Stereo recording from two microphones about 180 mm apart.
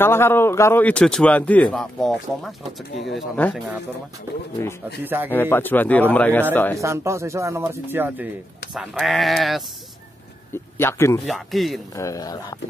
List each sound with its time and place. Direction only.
0.0 s a man's voice: 15° left (ahead or behind)
5.0 s speech: 10° right (ahead or behind)
5.3 s a man's voice: 10° left (ahead or behind)
6.8 s speech: 15° right (ahead or behind)
8.7 s speech: centre (ahead or behind)
10.5 s speech: 15° left (ahead or behind)
11.2 s speech: centre (ahead or behind)
11.9 s speech: 20° left (ahead or behind)